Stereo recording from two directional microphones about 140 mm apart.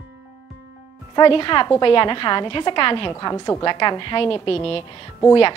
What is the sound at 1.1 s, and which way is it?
A woman's voice, 40° left (ahead or behind).